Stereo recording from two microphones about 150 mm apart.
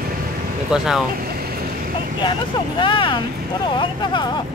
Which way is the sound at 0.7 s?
5° right (ahead or behind).